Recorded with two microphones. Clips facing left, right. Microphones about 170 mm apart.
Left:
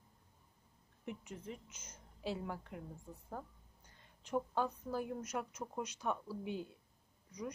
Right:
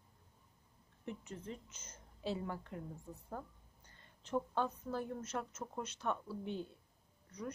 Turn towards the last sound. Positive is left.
turn(degrees=10)  # may be behind; listen again after turning